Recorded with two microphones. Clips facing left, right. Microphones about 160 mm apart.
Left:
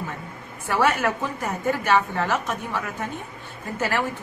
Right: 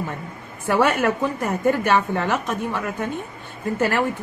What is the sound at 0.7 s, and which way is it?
A man's voice, 55° right (ahead or behind).